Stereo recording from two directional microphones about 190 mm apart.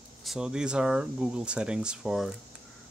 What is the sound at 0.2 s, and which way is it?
Speech, centre (ahead or behind).